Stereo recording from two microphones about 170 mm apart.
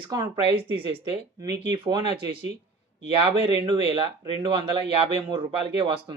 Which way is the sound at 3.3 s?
30° right (ahead or behind).